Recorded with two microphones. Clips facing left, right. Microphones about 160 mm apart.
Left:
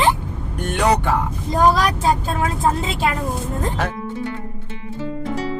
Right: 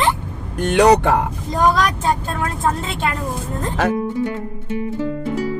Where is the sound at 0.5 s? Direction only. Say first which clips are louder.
Right 6 dB; 85° right.